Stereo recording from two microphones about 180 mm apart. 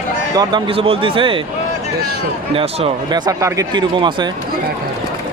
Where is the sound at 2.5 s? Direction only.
30° right (ahead or behind).